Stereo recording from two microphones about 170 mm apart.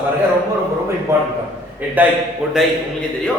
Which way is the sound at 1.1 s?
15° right (ahead or behind).